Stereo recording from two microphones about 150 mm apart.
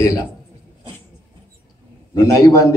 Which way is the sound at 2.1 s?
20° left (ahead or behind).